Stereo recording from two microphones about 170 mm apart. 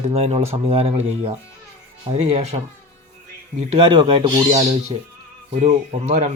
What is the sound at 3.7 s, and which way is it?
Speech, 30° right (ahead or behind).